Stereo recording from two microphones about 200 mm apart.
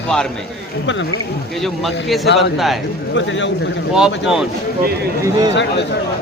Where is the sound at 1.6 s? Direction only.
Centre (ahead or behind).